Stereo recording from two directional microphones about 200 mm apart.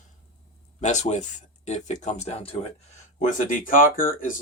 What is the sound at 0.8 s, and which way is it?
Speech, 35° left (ahead or behind).